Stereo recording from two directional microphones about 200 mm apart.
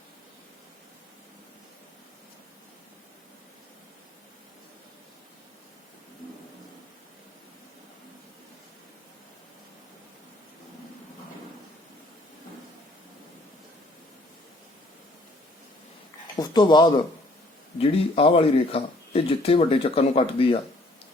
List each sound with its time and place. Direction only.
16.3 s speech: 20° left (ahead or behind)